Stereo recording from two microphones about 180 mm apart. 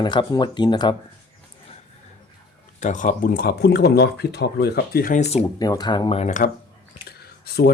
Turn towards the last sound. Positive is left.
turn(degrees=60)  # may be behind; listen again after turning